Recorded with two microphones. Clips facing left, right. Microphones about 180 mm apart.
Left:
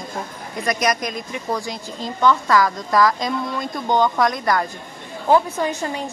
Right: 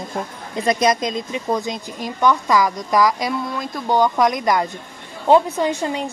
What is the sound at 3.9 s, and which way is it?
A woman's voice, 15° right (ahead or behind).